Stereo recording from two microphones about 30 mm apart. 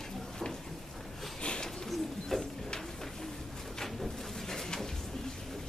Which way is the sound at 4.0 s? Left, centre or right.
Centre.